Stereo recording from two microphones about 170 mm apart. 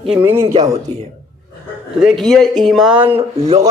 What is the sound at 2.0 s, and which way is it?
Speech, centre (ahead or behind).